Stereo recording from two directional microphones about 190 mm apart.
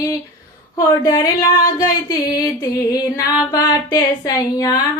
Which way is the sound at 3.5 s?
20° left (ahead or behind).